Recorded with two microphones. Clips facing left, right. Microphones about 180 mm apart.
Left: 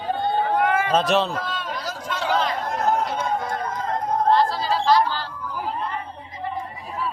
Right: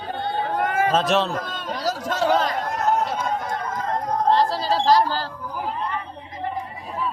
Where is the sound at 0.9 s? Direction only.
Centre (ahead or behind).